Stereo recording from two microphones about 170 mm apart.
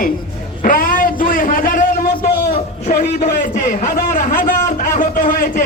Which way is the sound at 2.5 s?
45° left (ahead or behind).